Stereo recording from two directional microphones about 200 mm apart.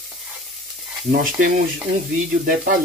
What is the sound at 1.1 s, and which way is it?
Speech, 45° right (ahead or behind).